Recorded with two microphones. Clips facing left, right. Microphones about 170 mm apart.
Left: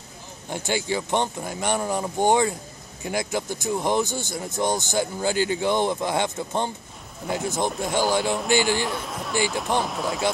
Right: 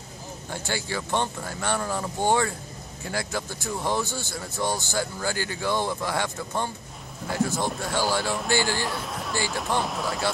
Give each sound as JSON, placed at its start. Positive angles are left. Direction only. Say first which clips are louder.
{"t": 0.5, "sound": "speech", "louder": "left 5 dB", "side_deg": 20}
{"t": 8.8, "sound": "speech", "louder": "left 2 dB", "side_deg": 0}